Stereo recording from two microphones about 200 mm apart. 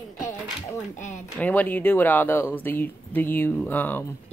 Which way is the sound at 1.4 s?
10° left (ahead or behind).